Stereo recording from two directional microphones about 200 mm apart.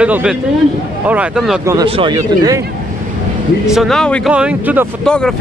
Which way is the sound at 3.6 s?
Centre (ahead or behind).